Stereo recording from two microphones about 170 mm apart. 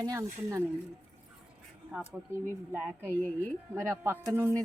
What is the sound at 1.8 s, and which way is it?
Speech, 10° right (ahead or behind).